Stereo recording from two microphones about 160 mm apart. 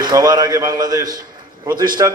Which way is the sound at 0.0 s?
25° right (ahead or behind).